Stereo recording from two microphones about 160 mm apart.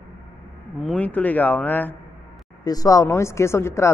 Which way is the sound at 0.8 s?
5° left (ahead or behind).